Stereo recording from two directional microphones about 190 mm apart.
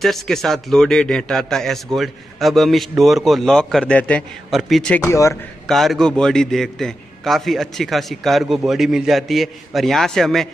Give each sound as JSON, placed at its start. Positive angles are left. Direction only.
{"t": 0.0, "sound": "a man's voice", "side_deg": 0}
{"t": 5.0, "sound": "a man's voice", "side_deg": 15}
{"t": 5.7, "sound": "a man's voice", "side_deg": 0}